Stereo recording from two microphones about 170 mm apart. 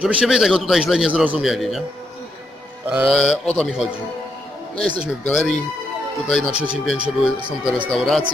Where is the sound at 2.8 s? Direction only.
10° right (ahead or behind).